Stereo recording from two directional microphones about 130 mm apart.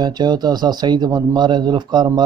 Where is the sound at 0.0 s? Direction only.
35° right (ahead or behind).